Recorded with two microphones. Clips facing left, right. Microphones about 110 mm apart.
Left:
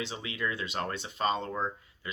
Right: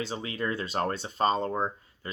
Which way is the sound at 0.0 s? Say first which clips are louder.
Right 3 dB; 40° right (ahead or behind).